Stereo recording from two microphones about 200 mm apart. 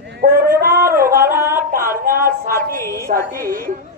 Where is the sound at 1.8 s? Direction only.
45° right (ahead or behind).